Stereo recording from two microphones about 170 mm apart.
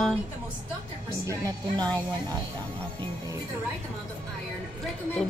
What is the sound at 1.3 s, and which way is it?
Speech, 20° right (ahead or behind).